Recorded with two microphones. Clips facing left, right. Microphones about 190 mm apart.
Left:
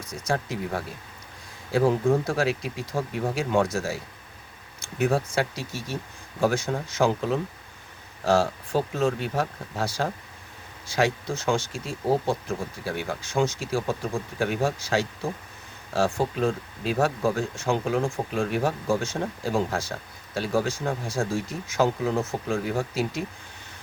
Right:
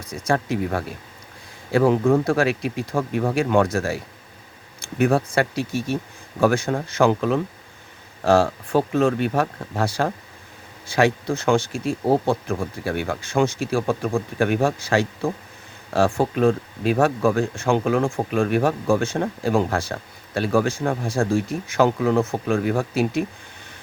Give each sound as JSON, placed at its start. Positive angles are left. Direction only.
{"t": 0.3, "sound": "speech", "side_deg": -60}
{"t": 4.9, "sound": "speech", "side_deg": -55}